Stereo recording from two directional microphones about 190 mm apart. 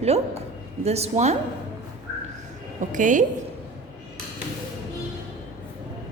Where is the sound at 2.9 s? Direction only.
40° right (ahead or behind).